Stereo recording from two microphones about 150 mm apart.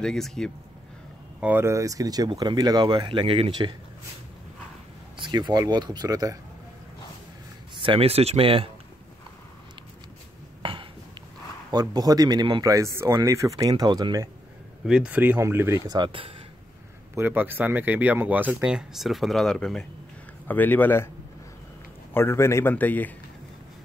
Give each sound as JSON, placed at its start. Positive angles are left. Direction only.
{"t": 0.0, "sound": "speech", "side_deg": 5}
{"t": 1.4, "sound": "speech", "side_deg": -15}
{"t": 5.1, "sound": "speech", "side_deg": -30}
{"t": 7.7, "sound": "speech", "side_deg": -35}
{"t": 10.6, "sound": "a sound", "side_deg": -35}
{"t": 11.7, "sound": "speech", "side_deg": -25}
{"t": 14.9, "sound": "speech", "side_deg": -5}
{"t": 16.0, "sound": "speech", "side_deg": -35}
{"t": 17.1, "sound": "a man's voice", "side_deg": -15}
{"t": 22.1, "sound": "a man's voice", "side_deg": 15}